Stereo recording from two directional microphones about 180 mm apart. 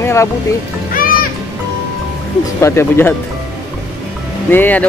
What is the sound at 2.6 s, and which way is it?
Speech, 15° left (ahead or behind).